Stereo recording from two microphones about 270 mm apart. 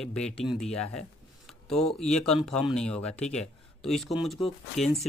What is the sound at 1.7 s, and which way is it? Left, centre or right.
Speech, left.